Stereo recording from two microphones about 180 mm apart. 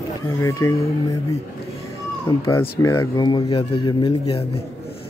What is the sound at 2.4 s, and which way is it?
Speech, 15° left (ahead or behind).